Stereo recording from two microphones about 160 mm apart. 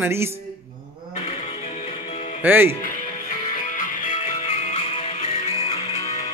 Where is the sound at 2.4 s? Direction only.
15° right (ahead or behind).